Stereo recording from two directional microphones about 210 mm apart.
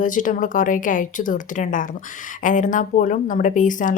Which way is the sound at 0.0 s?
40° left (ahead or behind).